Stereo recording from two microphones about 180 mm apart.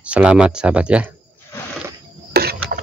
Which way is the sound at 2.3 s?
60° right (ahead or behind).